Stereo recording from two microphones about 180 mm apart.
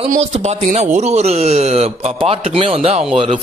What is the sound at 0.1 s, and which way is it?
Speech, 40° right (ahead or behind).